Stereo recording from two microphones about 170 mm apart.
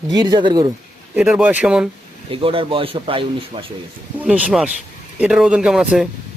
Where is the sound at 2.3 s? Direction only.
30° right (ahead or behind).